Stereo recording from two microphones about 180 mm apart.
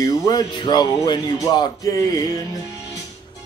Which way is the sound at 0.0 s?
20° left (ahead or behind).